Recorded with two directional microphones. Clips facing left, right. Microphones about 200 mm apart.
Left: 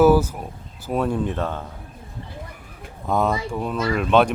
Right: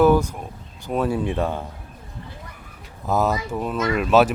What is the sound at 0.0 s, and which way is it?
Speech, 5° left (ahead or behind).